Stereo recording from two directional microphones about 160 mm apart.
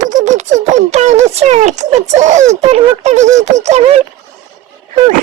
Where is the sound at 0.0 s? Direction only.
50° right (ahead or behind).